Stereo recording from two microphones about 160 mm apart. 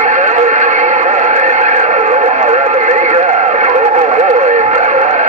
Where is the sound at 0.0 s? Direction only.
50° right (ahead or behind).